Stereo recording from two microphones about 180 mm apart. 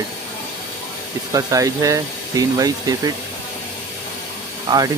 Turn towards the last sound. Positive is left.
turn(degrees=-20)  # may be behind; listen again after turning